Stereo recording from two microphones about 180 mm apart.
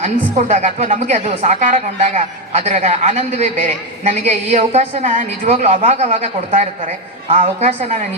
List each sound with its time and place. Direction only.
0.0 s a woman's voice: 40° right (ahead or behind)